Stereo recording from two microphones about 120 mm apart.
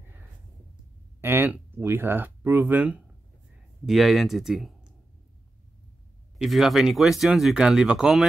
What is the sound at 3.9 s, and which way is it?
Speech, centre (ahead or behind).